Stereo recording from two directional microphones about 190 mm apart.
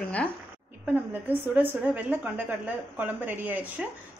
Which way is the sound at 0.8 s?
10° right (ahead or behind).